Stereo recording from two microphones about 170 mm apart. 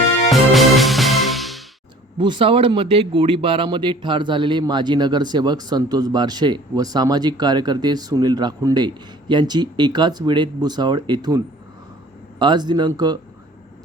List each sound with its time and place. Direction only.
0.3 s music: centre (ahead or behind)
2.1 s speech: 25° right (ahead or behind)